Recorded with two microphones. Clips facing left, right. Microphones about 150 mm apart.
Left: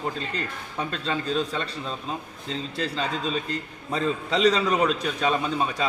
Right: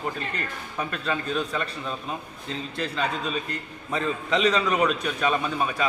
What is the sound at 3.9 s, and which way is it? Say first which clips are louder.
A man's voice: even; 30° left (ahead or behind).